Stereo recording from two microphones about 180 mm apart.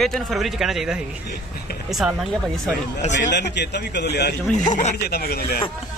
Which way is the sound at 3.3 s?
70° left (ahead or behind).